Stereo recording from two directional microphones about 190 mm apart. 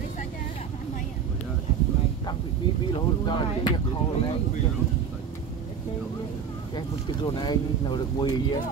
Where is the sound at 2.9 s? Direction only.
25° left (ahead or behind).